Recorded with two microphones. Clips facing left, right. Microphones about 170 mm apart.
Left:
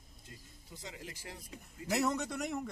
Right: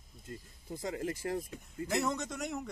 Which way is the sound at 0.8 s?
50° right (ahead or behind).